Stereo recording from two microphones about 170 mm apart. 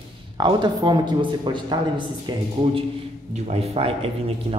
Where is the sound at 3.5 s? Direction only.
35° right (ahead or behind).